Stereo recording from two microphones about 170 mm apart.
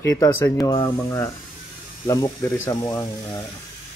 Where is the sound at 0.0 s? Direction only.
15° left (ahead or behind).